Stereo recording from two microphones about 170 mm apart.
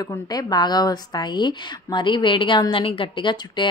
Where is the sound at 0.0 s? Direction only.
20° left (ahead or behind).